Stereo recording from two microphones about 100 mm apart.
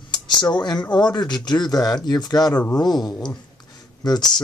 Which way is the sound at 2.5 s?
15° left (ahead or behind).